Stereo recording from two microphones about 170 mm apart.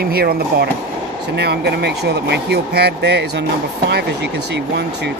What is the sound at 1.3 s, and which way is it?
Speech, 75° right (ahead or behind).